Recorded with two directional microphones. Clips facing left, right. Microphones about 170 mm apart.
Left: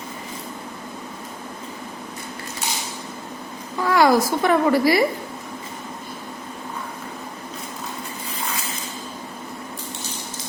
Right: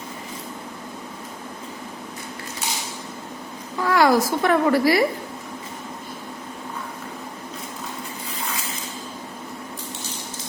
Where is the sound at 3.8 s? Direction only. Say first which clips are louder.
Left 1 dB; 15° left (ahead or behind).